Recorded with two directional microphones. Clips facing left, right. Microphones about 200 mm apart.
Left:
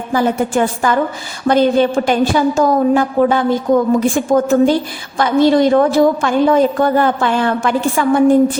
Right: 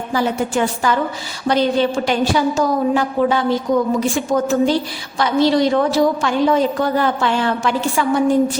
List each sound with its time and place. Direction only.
0.1 s a woman's voice: 50° left (ahead or behind)